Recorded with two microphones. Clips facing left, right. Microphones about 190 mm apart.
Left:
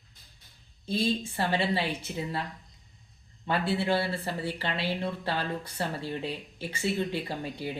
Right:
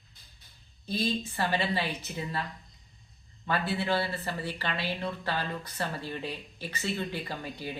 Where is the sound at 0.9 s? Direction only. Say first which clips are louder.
Left 2 dB; 25° left (ahead or behind).